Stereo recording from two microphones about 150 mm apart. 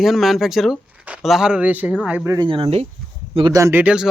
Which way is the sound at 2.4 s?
35° right (ahead or behind).